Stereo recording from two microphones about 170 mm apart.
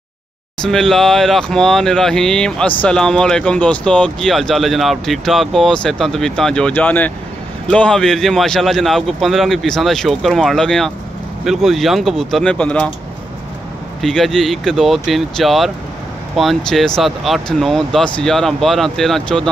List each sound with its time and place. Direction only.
0.6 s speech: centre (ahead or behind)
14.0 s speech: centre (ahead or behind)